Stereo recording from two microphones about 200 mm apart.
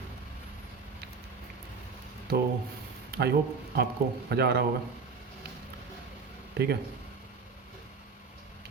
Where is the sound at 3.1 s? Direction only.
55° right (ahead or behind).